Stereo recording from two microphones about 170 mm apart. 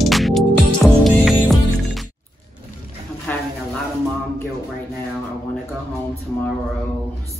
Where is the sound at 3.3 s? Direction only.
10° left (ahead or behind).